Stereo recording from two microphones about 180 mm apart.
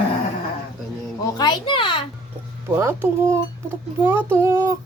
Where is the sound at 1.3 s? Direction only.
25° left (ahead or behind).